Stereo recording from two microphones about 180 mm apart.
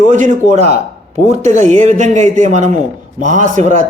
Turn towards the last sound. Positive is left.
turn(degrees=-40)  # may be behind; listen again after turning